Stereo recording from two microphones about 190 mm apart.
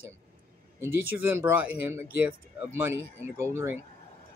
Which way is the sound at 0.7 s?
10° right (ahead or behind).